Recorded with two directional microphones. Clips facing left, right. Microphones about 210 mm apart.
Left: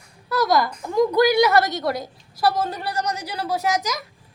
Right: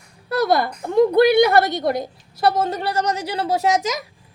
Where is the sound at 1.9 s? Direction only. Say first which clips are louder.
Right 4 dB; 55° right (ahead or behind).